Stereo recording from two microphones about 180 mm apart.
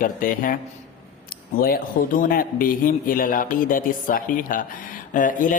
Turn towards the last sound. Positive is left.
turn(degrees=45)  # may be behind; listen again after turning